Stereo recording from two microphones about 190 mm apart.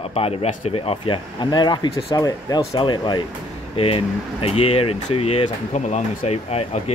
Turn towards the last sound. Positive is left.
turn(degrees=35)  # may be behind; listen again after turning